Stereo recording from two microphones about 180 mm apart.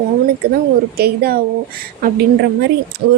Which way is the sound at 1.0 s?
55° right (ahead or behind).